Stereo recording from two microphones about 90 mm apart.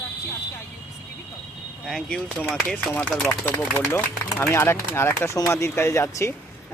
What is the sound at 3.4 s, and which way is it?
Speech, 20° left (ahead or behind).